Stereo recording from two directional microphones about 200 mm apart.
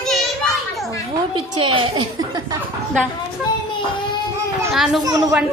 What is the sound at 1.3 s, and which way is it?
A woman's voice, 25° right (ahead or behind).